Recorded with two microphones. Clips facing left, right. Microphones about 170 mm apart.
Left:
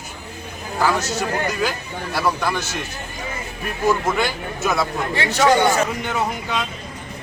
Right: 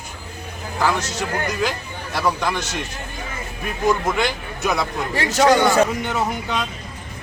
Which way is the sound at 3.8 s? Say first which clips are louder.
Even; 5° left (ahead or behind).